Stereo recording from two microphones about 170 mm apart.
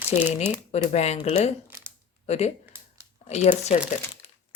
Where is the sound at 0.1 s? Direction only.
45° left (ahead or behind).